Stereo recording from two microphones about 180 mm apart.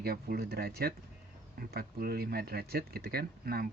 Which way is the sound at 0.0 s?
60° right (ahead or behind).